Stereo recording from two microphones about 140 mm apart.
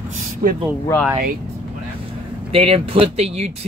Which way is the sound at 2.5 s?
45° right (ahead or behind).